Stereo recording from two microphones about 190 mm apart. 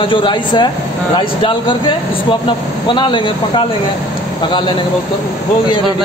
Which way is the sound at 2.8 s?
25° left (ahead or behind).